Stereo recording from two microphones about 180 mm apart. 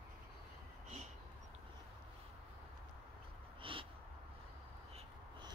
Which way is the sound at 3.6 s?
30° right (ahead or behind).